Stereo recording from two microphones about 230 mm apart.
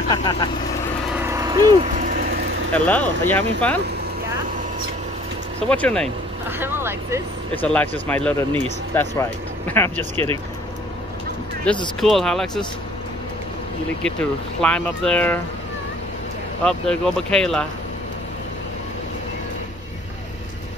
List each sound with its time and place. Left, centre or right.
0.1 s speech: centre
1.1 s vehicle: centre
2.0 s vehicle: right
2.7 s speech: centre
5.7 s speech: centre
6.6 s speech: centre
7.5 s speech: centre
11.7 s speech: centre
14.6 s speech: centre
16.6 s speech: centre